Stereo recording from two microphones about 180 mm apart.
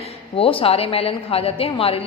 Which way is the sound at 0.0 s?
30° left (ahead or behind).